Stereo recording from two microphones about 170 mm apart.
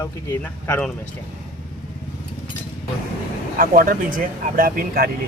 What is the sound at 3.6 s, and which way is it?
Speech, 55° right (ahead or behind).